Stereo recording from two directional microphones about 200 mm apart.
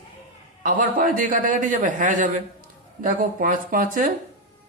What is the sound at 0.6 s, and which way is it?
A man's voice, 45° right (ahead or behind).